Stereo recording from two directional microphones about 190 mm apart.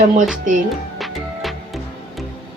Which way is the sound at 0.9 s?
Centre (ahead or behind).